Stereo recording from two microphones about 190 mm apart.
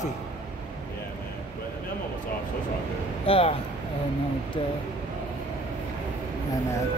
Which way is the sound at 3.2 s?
30° left (ahead or behind).